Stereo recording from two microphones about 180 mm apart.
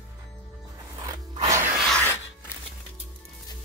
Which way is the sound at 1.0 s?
20° right (ahead or behind).